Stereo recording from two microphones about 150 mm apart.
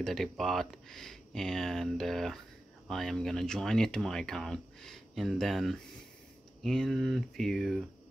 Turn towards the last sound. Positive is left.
turn(degrees=0)  # may be behind; listen again after turning